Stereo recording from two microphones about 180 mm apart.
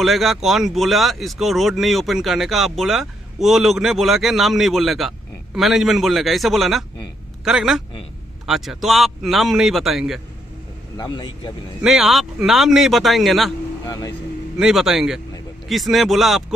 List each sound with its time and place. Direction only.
0.0 s speech: centre (ahead or behind)
11.0 s a man's voice: 25° left (ahead or behind)
11.8 s speech: centre (ahead or behind)
13.8 s speech: 20° left (ahead or behind)
14.6 s speech: centre (ahead or behind)